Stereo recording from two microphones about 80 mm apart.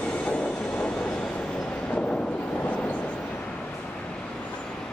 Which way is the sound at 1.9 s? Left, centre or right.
Centre.